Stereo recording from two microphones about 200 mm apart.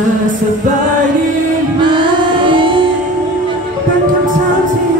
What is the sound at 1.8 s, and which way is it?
Music, 25° right (ahead or behind).